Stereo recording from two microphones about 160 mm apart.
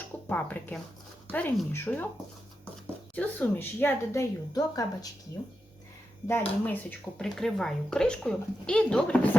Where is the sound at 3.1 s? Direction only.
10° left (ahead or behind).